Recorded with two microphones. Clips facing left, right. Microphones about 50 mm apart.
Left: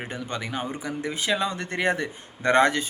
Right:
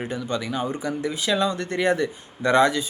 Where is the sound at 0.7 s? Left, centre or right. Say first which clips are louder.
Right 4 dB; centre.